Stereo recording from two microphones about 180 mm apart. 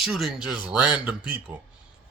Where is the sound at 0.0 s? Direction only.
Centre (ahead or behind).